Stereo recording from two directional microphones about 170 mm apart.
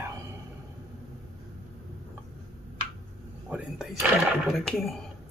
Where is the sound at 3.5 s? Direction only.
5° right (ahead or behind).